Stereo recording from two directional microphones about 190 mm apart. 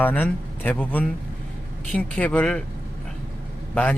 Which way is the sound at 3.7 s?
5° left (ahead or behind).